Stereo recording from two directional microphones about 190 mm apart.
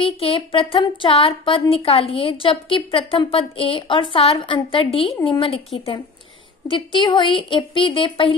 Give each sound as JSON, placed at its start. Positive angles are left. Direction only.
{"t": 0.0, "sound": "a woman's voice", "side_deg": 30}